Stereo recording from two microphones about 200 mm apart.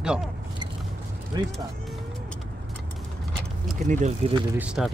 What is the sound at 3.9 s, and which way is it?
Speech, 35° right (ahead or behind).